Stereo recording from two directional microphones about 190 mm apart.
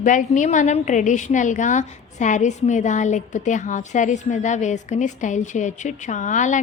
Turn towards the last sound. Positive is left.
turn(degrees=40)  # may be behind; listen again after turning